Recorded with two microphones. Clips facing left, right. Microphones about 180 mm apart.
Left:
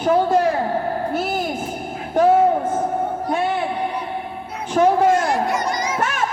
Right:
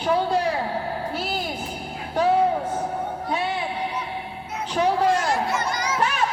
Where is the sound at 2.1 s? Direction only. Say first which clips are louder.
Left 5 dB; 50° left (ahead or behind).